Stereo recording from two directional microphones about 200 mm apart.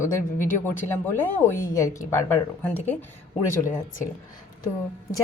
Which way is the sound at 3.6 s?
40° left (ahead or behind).